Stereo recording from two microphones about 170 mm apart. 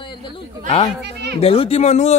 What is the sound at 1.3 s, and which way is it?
Speech, 35° left (ahead or behind).